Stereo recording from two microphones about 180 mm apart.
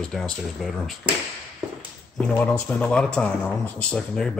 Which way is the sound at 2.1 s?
5° left (ahead or behind).